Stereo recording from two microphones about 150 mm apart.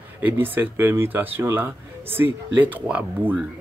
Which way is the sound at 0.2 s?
10° right (ahead or behind).